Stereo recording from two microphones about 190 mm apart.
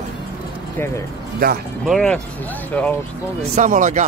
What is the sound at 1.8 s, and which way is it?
Speech, centre (ahead or behind).